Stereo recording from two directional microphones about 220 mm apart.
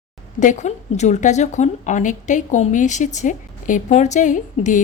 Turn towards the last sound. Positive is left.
turn(degrees=35)  # may be behind; listen again after turning